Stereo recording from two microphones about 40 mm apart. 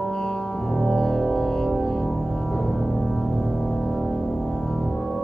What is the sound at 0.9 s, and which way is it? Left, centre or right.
Music, centre.